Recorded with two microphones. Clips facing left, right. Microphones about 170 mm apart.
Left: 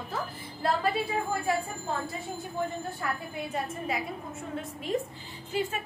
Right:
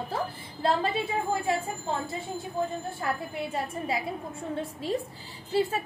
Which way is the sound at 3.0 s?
30° right (ahead or behind).